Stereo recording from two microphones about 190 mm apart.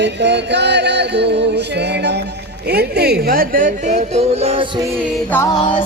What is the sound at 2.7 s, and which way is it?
Speech, 60° right (ahead or behind).